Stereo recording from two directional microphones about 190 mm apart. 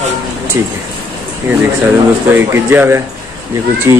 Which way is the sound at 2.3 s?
10° right (ahead or behind).